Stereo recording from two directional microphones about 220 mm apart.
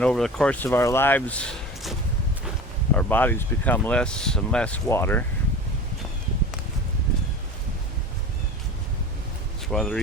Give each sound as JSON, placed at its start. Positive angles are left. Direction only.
{"t": 0.0, "sound": "speech", "side_deg": 5}
{"t": 9.7, "sound": "speech", "side_deg": 0}